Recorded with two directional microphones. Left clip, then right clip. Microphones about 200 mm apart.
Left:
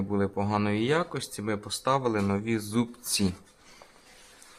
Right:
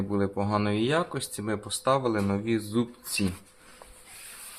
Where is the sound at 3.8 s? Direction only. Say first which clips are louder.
Right 3 dB; 30° right (ahead or behind).